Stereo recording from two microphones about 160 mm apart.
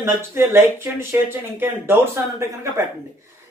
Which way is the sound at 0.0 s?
15° right (ahead or behind).